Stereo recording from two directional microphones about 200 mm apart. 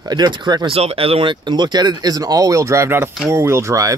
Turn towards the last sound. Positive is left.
turn(degrees=-15)  # may be behind; listen again after turning